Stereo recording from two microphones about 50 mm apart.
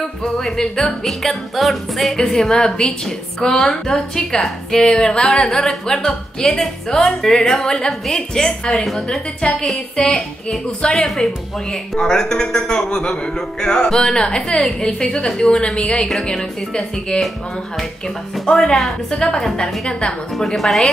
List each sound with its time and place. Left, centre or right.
0.2 s a man's voice: centre
1.0 s a man's voice: centre
8.8 s speech: centre
9.4 s a man's voice: centre
18.3 s a man's voice: centre
20.3 s speech: centre